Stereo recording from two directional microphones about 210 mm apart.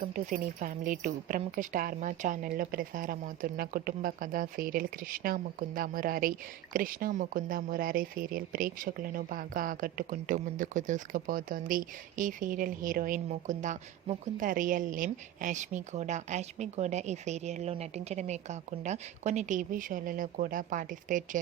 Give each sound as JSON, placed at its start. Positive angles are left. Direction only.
{"t": 0.0, "sound": "a woman's voice", "side_deg": -40}